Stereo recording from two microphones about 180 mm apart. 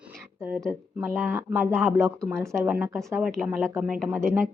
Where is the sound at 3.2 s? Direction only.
Centre (ahead or behind).